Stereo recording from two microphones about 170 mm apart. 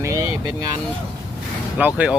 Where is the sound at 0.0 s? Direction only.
20° right (ahead or behind).